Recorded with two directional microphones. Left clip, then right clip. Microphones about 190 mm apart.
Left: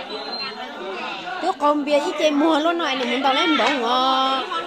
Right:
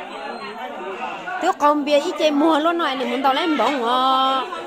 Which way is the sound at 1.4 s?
10° right (ahead or behind).